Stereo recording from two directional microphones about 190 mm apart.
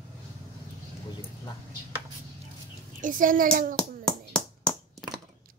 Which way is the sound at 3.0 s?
45° right (ahead or behind).